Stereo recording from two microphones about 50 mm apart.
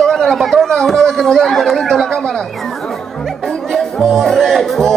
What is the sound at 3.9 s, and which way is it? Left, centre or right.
Music, centre.